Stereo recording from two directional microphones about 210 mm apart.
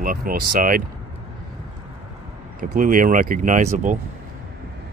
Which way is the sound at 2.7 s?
40° right (ahead or behind).